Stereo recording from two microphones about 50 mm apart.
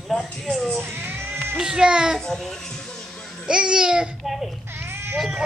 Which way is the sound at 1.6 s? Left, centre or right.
Centre.